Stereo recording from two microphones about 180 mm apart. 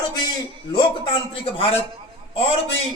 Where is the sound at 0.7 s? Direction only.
25° left (ahead or behind).